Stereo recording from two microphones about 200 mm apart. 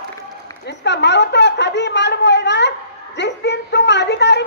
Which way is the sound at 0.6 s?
60° left (ahead or behind).